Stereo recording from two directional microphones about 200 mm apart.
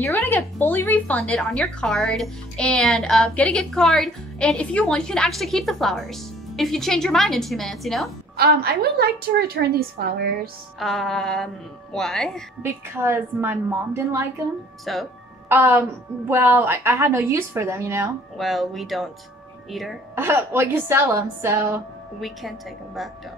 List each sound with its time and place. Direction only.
0.0 s speech: 15° left (ahead or behind)
8.4 s a woman's voice: 50° right (ahead or behind)
10.8 s speech: centre (ahead or behind)
12.6 s a woman's voice: 10° right (ahead or behind)
14.9 s speech: centre (ahead or behind)
15.4 s a woman's voice: 10° right (ahead or behind)
18.4 s speech: centre (ahead or behind)
20.2 s a woman's voice: 10° right (ahead or behind)